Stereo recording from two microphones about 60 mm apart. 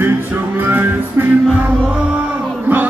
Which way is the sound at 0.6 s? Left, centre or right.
Right.